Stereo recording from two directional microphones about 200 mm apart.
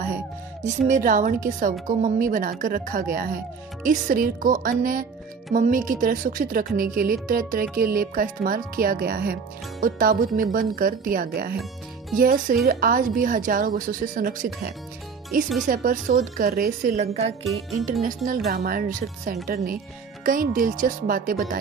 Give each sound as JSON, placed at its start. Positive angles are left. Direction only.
{"t": 0.7, "sound": "a woman's voice", "side_deg": -40}
{"t": 17.5, "sound": "music", "side_deg": 0}
{"t": 18.0, "sound": "speech", "side_deg": -40}